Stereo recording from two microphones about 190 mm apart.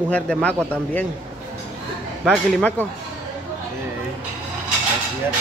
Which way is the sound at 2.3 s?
Centre (ahead or behind).